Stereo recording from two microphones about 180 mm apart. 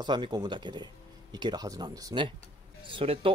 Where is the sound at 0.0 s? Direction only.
25° right (ahead or behind).